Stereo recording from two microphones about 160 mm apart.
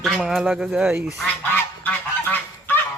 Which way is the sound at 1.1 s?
10° left (ahead or behind).